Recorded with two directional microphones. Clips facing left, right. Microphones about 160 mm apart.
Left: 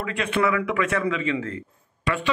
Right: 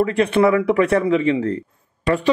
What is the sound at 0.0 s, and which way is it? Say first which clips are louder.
A man's voice: right 8 dB; 35° right (ahead or behind).